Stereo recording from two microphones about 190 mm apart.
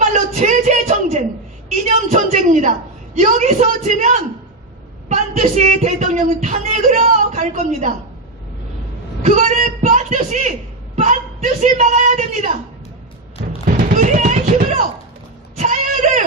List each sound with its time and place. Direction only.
0.1 s a sound: 40° right (ahead or behind)
1.7 s a woman's voice: 35° right (ahead or behind)
9.2 s speech: 40° right (ahead or behind)
10.9 s a sound: 40° right (ahead or behind)
13.7 s music: 45° right (ahead or behind)
15.5 s bleat: 40° right (ahead or behind)